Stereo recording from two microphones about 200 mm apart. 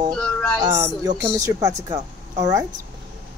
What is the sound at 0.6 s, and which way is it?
Speech, 20° right (ahead or behind).